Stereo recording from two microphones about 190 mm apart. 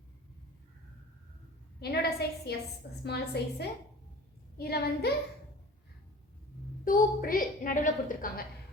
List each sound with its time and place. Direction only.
1.8 s a woman's voice: 55° left (ahead or behind)
6.8 s a woman's voice: 45° left (ahead or behind)